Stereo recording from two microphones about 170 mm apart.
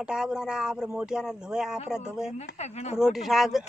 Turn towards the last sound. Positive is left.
turn(degrees=0)  # may be behind; listen again after turning